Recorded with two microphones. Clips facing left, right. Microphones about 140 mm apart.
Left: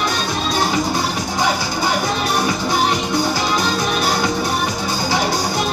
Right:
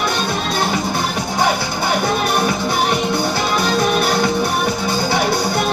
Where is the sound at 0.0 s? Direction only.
60° right (ahead or behind).